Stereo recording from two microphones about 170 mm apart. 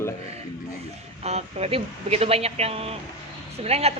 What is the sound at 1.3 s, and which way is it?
A woman's voice, 40° right (ahead or behind).